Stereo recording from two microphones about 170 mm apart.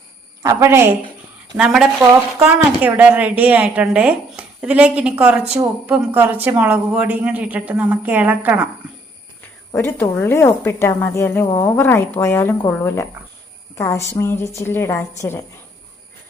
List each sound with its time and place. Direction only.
0.4 s speech: 15° right (ahead or behind)
1.5 s speech: 5° right (ahead or behind)
9.7 s a woman's voice: 10° left (ahead or behind)